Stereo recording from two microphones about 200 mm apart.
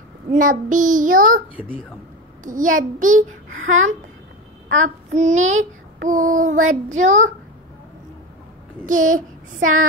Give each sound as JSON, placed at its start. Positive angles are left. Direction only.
{"t": 0.3, "sound": "a child's voice", "side_deg": -40}
{"t": 2.4, "sound": "a child's voice", "side_deg": -40}
{"t": 8.8, "sound": "a child's voice", "side_deg": -40}